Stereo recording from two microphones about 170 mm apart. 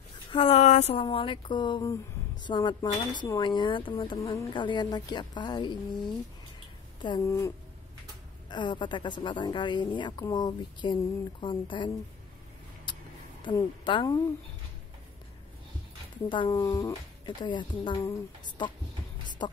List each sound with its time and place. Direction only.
0.3 s speech: 35° left (ahead or behind)
1.0 s speech: 30° left (ahead or behind)
12.9 s a sound: 25° left (ahead or behind)
13.4 s speech: 25° left (ahead or behind)
16.4 s speech: 20° left (ahead or behind)